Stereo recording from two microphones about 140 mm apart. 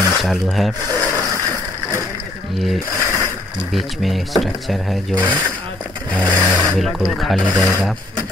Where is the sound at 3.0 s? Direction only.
20° left (ahead or behind).